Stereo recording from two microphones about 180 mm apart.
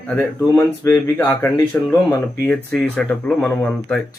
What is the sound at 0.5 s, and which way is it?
Speech, 15° left (ahead or behind).